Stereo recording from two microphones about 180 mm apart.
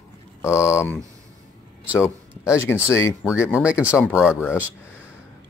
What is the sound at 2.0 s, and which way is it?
Speech, 15° left (ahead or behind).